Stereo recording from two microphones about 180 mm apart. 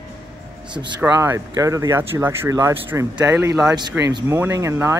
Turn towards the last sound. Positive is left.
turn(degrees=-15)  # may be behind; listen again after turning